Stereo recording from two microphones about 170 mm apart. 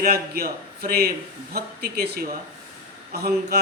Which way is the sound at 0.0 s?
60° right (ahead or behind).